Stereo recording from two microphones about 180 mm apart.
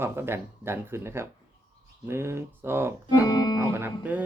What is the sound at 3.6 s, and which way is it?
Speech, 10° right (ahead or behind).